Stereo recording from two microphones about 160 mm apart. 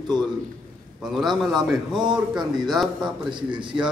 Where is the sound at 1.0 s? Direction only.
Centre (ahead or behind).